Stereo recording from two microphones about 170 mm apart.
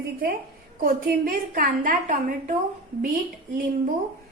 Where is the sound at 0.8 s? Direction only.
60° right (ahead or behind).